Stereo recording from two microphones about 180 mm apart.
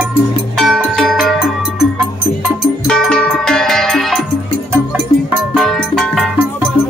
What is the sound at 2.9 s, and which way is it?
Music, 5° left (ahead or behind).